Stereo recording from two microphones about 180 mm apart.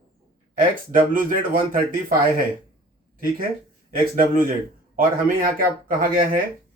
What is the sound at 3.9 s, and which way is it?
Speech, 55° right (ahead or behind).